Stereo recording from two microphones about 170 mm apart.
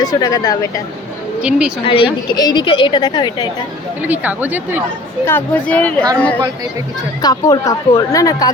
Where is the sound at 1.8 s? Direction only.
30° left (ahead or behind).